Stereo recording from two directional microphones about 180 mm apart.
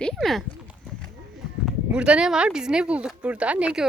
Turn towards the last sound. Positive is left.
turn(degrees=-5)  # may be behind; listen again after turning